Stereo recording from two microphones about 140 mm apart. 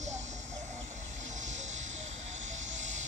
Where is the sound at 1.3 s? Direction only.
60° right (ahead or behind).